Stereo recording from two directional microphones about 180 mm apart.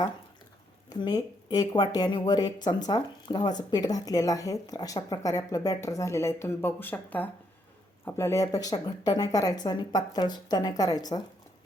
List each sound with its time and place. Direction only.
0.9 s speech: 20° left (ahead or behind)